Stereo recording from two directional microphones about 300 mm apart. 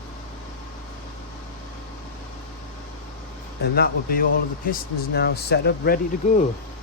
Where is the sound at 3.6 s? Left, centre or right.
Left.